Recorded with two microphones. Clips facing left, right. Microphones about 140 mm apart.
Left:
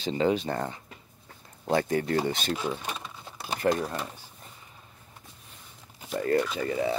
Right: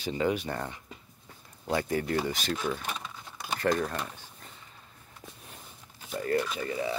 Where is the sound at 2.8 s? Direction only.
10° left (ahead or behind).